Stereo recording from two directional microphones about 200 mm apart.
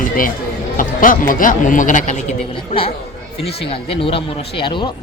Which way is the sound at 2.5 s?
25° left (ahead or behind).